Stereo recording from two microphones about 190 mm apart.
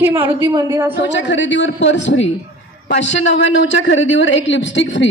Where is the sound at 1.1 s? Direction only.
70° left (ahead or behind).